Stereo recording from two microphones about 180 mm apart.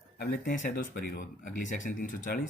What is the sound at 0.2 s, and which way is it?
Speech, 50° left (ahead or behind).